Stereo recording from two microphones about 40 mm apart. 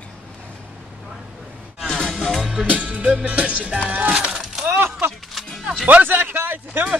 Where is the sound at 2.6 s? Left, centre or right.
Right.